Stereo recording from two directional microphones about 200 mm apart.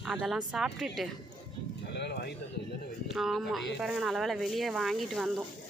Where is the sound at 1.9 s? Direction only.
55° left (ahead or behind).